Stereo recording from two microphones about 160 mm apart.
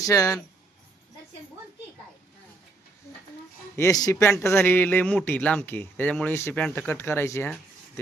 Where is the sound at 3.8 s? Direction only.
20° left (ahead or behind).